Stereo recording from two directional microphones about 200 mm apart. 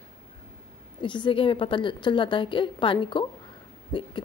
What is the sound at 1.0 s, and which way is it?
A woman's voice, 25° left (ahead or behind).